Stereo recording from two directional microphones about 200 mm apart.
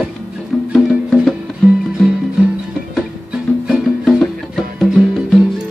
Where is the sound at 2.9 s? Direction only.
Centre (ahead or behind).